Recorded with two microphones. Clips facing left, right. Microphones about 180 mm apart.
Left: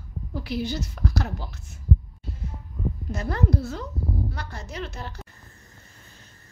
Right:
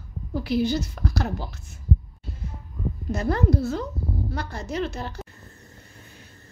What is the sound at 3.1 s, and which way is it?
A woman's voice, 35° right (ahead or behind).